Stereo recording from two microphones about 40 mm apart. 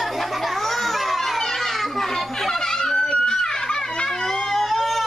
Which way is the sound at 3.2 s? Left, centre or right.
Centre.